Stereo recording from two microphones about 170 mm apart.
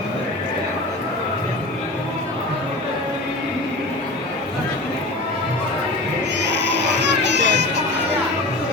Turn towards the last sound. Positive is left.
turn(degrees=-90)